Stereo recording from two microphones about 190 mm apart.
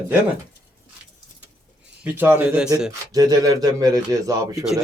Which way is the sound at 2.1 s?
10° right (ahead or behind).